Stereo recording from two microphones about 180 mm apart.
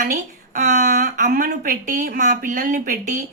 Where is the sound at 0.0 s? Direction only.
45° right (ahead or behind).